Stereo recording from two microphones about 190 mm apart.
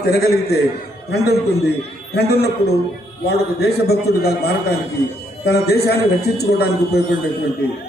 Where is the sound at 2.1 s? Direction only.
55° left (ahead or behind).